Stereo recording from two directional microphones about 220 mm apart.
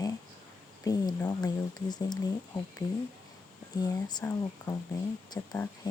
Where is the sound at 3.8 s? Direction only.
15° left (ahead or behind).